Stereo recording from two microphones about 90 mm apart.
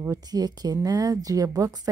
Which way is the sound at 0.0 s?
40° right (ahead or behind).